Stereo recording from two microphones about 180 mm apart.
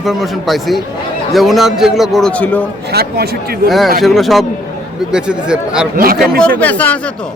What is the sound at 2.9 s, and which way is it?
Speech, 60° right (ahead or behind).